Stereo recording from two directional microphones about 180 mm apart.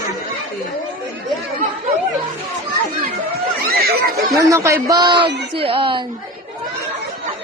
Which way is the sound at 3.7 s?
60° right (ahead or behind).